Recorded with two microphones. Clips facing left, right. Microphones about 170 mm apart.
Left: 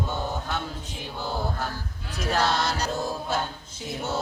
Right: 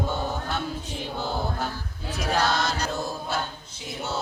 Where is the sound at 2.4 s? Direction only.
30° left (ahead or behind).